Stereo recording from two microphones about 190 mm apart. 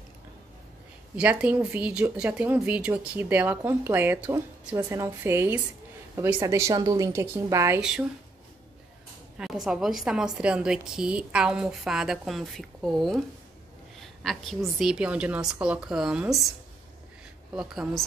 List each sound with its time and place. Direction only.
1.1 s speech: 5° right (ahead or behind)
9.4 s a woman's voice: centre (ahead or behind)
17.6 s a woman's voice: centre (ahead or behind)